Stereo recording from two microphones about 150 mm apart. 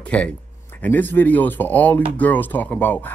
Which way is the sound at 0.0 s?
10° left (ahead or behind).